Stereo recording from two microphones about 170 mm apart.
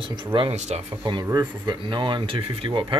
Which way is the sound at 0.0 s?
30° right (ahead or behind).